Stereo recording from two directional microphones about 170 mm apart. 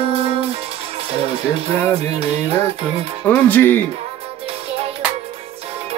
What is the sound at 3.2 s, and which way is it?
Speech, 10° left (ahead or behind).